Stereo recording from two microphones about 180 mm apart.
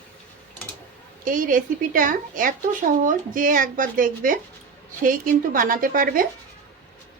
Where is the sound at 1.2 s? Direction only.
50° right (ahead or behind).